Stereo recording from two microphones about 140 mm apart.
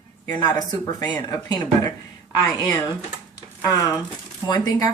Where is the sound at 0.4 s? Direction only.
30° left (ahead or behind).